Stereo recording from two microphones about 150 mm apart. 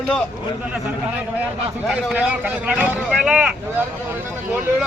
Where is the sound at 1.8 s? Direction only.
5° right (ahead or behind).